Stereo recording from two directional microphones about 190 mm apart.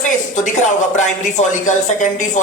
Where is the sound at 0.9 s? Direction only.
40° left (ahead or behind).